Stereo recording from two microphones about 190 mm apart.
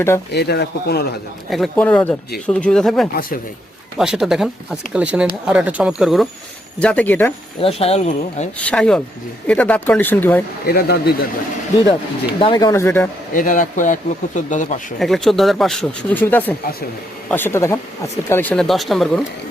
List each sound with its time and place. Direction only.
0.3 s speech: 60° left (ahead or behind)
1.5 s speech: centre (ahead or behind)
3.2 s speech: 50° left (ahead or behind)
3.9 s speech: 5° right (ahead or behind)
7.6 s speech: 30° left (ahead or behind)
8.5 s speech: 5° left (ahead or behind)
10.7 s speech: 55° left (ahead or behind)
12.4 s speech: 20° left (ahead or behind)
13.3 s speech: 45° left (ahead or behind)
14.9 s speech: centre (ahead or behind)